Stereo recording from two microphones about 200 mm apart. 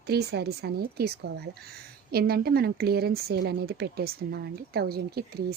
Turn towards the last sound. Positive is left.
turn(degrees=-50)  # may be behind; listen again after turning